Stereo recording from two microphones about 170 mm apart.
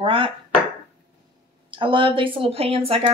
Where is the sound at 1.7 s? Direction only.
30° right (ahead or behind).